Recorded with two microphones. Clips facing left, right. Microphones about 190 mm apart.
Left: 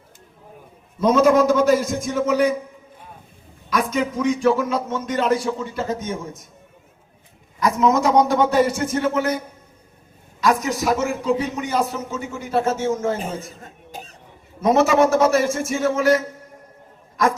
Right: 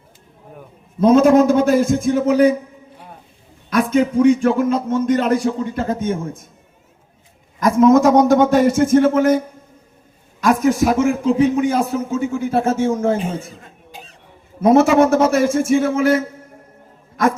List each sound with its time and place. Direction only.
1.1 s a man's voice: 55° right (ahead or behind)
3.7 s a man's voice: 55° right (ahead or behind)
7.6 s a man's voice: 50° right (ahead or behind)
10.4 s a man's voice: 50° right (ahead or behind)
13.2 s cough: 40° left (ahead or behind)
14.6 s a man's voice: 55° right (ahead or behind)